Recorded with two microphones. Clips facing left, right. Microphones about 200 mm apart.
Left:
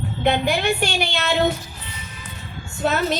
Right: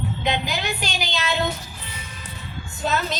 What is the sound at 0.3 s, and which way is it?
A woman's voice, 60° left (ahead or behind).